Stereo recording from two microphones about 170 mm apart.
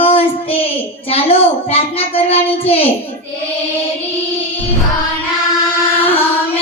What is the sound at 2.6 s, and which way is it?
Speech, 35° left (ahead or behind).